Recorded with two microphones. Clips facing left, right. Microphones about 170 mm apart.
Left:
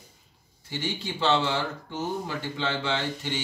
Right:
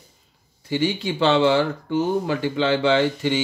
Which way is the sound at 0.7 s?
90° right.